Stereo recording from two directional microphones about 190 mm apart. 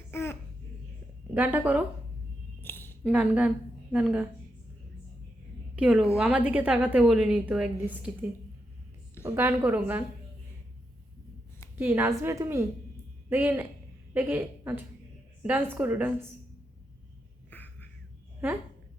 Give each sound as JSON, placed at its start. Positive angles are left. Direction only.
{"t": 0.1, "sound": "babbling", "side_deg": 10}
{"t": 1.3, "sound": "a woman's voice", "side_deg": -10}
{"t": 2.6, "sound": "a sound", "side_deg": 10}
{"t": 3.0, "sound": "a woman's voice", "side_deg": -5}
{"t": 5.7, "sound": "a woman's voice", "side_deg": -5}
{"t": 11.8, "sound": "a woman's voice", "side_deg": -10}
{"t": 17.5, "sound": "music", "side_deg": 10}